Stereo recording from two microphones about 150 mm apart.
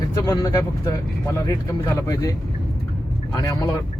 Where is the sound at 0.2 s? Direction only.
25° left (ahead or behind).